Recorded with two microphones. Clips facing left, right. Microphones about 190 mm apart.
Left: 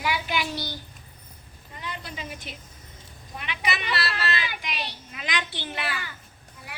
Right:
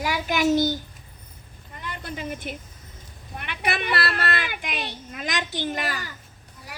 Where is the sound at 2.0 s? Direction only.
50° right (ahead or behind).